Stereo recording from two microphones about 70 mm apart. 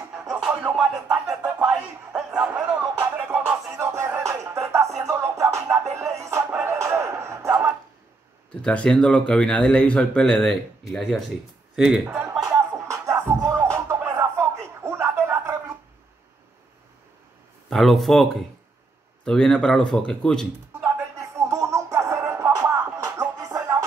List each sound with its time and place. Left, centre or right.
0.3 s music: centre
1.8 s a sound: centre
3.3 s music: centre
3.7 s music: right
8.6 s speech: centre
12.4 s music: right
13.6 s a sound: right
17.6 s speech: centre
21.2 s music: right